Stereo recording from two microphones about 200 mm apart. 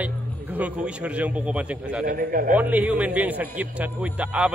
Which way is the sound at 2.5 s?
10° right (ahead or behind).